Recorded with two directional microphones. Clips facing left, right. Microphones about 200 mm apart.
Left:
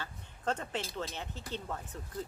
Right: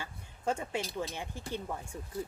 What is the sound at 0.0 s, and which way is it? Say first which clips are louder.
Speech: right 1 dB; 10° right (ahead or behind).